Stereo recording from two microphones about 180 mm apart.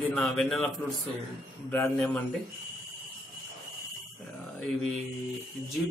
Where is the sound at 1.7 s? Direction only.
10° left (ahead or behind).